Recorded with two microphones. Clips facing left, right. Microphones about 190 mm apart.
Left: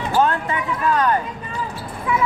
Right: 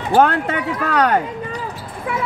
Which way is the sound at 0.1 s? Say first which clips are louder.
Right 5 dB; 80° right.